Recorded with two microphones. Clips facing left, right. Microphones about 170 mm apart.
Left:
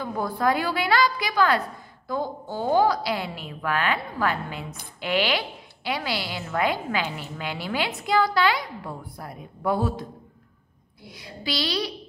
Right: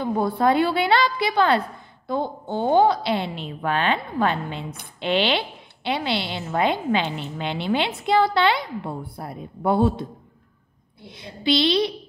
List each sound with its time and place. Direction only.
0.0 s a woman's voice: 25° right (ahead or behind)
11.1 s a woman's voice: 25° right (ahead or behind)